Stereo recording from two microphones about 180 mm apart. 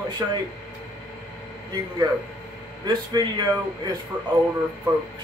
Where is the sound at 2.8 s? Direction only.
25° right (ahead or behind).